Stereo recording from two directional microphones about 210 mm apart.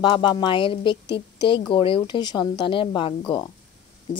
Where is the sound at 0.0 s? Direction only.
20° left (ahead or behind).